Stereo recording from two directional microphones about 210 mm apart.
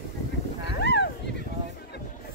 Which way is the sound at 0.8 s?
50° left (ahead or behind).